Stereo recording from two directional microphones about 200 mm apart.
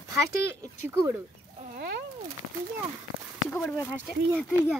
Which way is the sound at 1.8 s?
55° right (ahead or behind).